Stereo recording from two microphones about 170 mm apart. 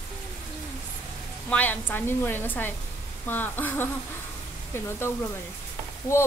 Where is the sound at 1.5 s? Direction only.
10° left (ahead or behind).